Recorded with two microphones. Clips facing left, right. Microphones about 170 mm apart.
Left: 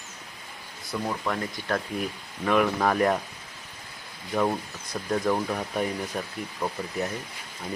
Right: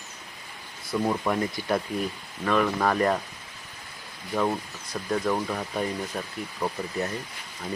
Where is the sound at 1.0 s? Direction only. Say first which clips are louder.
Right 4 dB; 15° right (ahead or behind).